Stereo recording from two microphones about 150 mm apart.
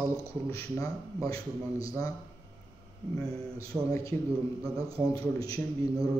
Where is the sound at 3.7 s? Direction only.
5° right (ahead or behind).